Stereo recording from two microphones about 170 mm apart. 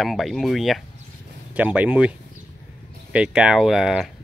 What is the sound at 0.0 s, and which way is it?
Speech, centre (ahead or behind).